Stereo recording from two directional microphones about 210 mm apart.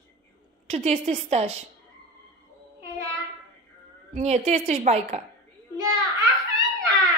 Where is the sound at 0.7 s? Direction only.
30° right (ahead or behind).